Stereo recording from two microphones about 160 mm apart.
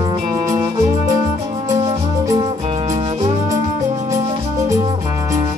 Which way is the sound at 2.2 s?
20° right (ahead or behind).